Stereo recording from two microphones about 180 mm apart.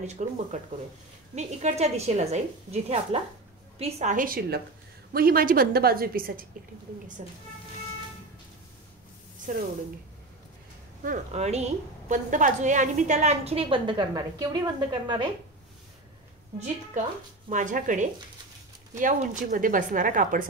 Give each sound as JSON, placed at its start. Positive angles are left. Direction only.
{"t": 0.0, "sound": "a woman's voice", "side_deg": -40}
{"t": 9.5, "sound": "a woman's voice", "side_deg": -45}
{"t": 11.1, "sound": "a woman's voice", "side_deg": -40}
{"t": 16.5, "sound": "a woman's voice", "side_deg": -40}